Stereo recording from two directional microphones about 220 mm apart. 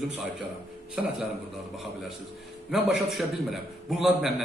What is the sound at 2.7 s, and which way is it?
A man's voice, centre (ahead or behind).